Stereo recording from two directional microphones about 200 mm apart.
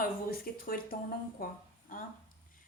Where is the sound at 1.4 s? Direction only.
40° left (ahead or behind).